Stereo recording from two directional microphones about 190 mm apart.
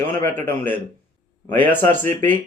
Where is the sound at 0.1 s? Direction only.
10° left (ahead or behind).